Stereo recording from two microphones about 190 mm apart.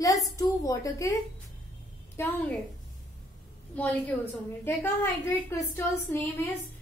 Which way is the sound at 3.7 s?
10° left (ahead or behind).